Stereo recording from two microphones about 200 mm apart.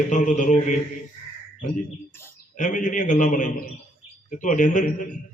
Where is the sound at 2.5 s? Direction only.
40° left (ahead or behind).